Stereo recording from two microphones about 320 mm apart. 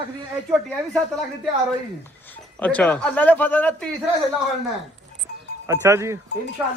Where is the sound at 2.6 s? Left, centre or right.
Centre.